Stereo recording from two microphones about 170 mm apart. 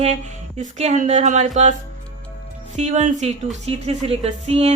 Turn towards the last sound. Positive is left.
turn(degrees=-40)  # may be behind; listen again after turning